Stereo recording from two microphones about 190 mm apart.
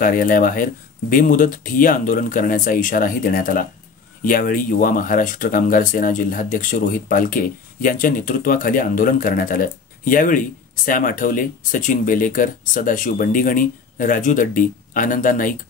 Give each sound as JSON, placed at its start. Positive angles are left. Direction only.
{"t": 0.0, "sound": "speech", "side_deg": 45}